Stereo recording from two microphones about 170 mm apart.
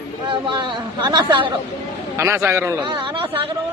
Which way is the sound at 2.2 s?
15° right (ahead or behind).